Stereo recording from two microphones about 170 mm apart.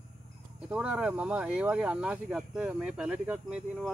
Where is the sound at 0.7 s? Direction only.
5° right (ahead or behind).